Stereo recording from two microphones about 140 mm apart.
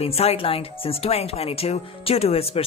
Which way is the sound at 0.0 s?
45° left (ahead or behind).